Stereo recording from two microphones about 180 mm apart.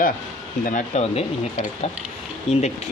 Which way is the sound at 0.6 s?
45° left (ahead or behind).